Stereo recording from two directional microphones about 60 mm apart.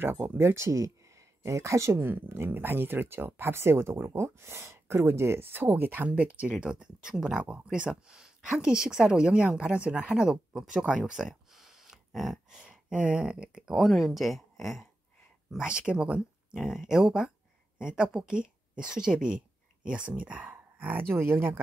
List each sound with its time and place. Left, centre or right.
0.0 s speech: right
2.0 s speech: right; by 7.4 s centre
7.4 s speech: right; by 10.9 s centre
10.9 s a sound: centre
12.9 s speech: right
13.8 s speech: centre
15.5 s speech: centre
21.1 s speech: right